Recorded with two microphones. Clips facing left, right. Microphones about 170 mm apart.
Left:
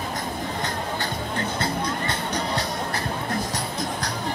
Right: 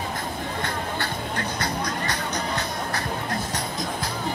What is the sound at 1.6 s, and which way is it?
Music, 30° left (ahead or behind).